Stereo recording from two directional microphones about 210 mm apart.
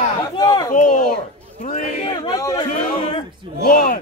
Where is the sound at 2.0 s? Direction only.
20° left (ahead or behind).